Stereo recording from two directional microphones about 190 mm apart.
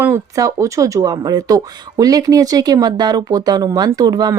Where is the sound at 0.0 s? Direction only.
15° right (ahead or behind).